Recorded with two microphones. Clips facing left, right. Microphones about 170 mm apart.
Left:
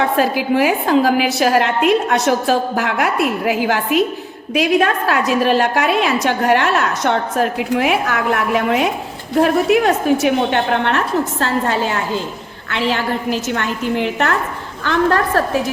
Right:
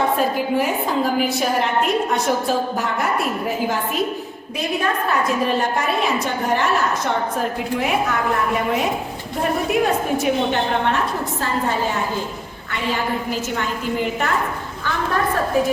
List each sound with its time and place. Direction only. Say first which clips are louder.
0.0 s a woman's voice: left 3 dB; 90° left